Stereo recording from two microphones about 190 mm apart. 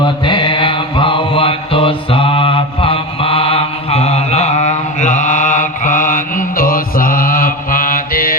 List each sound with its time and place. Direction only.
0.0 s mantra: 25° left (ahead or behind); by 8.4 s 50° left (ahead or behind)